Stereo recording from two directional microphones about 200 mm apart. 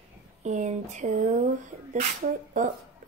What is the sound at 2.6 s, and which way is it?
Speech, 40° right (ahead or behind).